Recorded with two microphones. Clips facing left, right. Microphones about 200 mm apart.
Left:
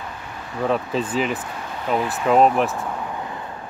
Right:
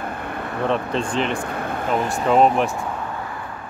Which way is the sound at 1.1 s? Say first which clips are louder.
Even; 5° left (ahead or behind).